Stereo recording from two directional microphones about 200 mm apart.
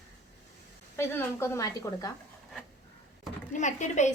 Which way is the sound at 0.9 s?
10° left (ahead or behind).